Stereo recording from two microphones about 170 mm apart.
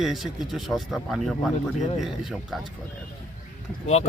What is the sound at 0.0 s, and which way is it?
Speech, centre (ahead or behind).